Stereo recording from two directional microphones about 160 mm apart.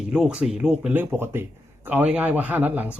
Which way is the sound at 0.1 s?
5° right (ahead or behind).